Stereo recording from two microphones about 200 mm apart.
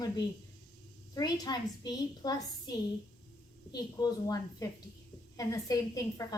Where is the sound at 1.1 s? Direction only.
20° left (ahead or behind).